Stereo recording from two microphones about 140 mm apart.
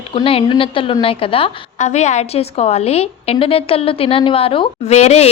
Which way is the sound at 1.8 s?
55° left (ahead or behind).